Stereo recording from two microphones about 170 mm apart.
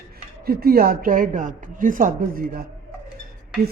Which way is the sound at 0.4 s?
60° right (ahead or behind).